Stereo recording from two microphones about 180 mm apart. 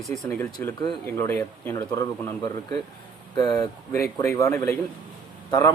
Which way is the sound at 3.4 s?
20° left (ahead or behind).